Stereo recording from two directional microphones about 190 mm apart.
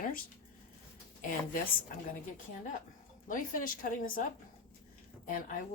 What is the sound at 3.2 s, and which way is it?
Speech, 45° left (ahead or behind).